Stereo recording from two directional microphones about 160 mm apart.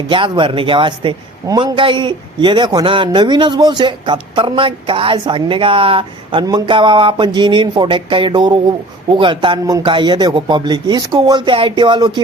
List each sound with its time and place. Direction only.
0.1 s a man's voice: 30° right (ahead or behind)